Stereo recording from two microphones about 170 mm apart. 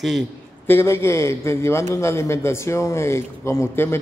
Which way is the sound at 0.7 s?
15° left (ahead or behind).